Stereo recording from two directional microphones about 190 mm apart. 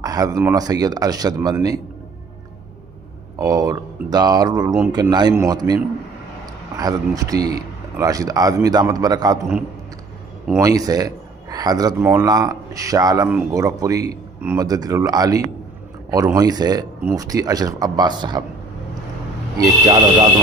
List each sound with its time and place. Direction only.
0.0 s speech: 20° right (ahead or behind)
3.3 s speech: 15° right (ahead or behind)
10.5 s speech: 20° right (ahead or behind)
19.6 s speech: 20° right (ahead or behind)